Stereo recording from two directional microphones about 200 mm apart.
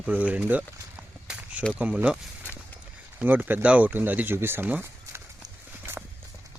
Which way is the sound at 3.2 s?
10° right (ahead or behind).